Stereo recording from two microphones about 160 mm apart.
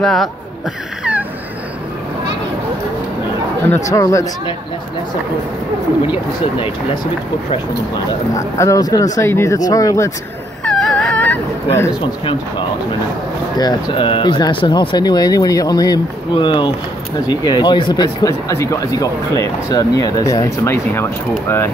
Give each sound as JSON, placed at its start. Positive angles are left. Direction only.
{"t": 0.0, "sound": "speech", "side_deg": 0}
{"t": 3.6, "sound": "speech", "side_deg": 15}
{"t": 8.4, "sound": "speech", "side_deg": 20}
{"t": 10.6, "sound": "dog", "side_deg": 5}
{"t": 13.6, "sound": "speech", "side_deg": 25}